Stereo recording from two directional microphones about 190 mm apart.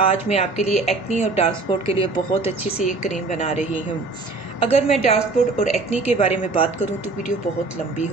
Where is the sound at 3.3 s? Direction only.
35° left (ahead or behind).